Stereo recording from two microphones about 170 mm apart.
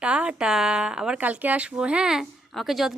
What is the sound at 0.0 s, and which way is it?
A woman's voice, 5° right (ahead or behind).